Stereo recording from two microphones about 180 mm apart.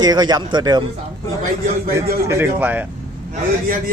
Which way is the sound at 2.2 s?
15° right (ahead or behind).